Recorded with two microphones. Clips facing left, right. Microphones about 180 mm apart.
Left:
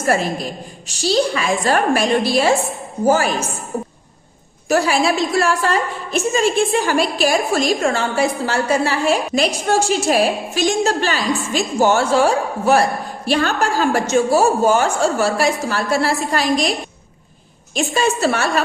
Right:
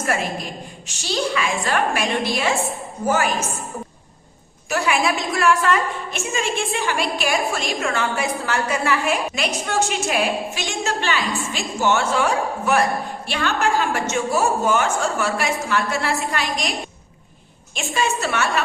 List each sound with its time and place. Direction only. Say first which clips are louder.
0.0 s a woman's voice: left 5 dB; 35° left (ahead or behind)
4.7 s a woman's voice: left 5 dB; 35° left (ahead or behind)
17.7 s a woman's voice: left 5 dB; 35° left (ahead or behind)